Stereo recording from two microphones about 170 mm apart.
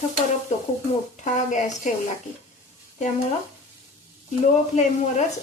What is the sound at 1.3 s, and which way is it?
Speech, 45° left (ahead or behind).